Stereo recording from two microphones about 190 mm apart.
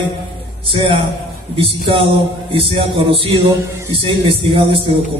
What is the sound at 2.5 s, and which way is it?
Speech, 30° right (ahead or behind).